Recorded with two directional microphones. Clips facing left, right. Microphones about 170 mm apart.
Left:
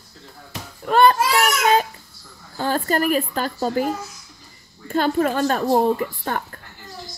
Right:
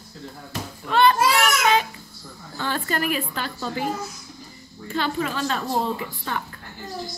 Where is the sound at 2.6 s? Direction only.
40° left (ahead or behind).